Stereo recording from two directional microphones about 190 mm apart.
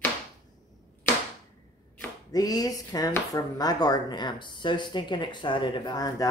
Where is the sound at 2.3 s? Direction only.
20° left (ahead or behind).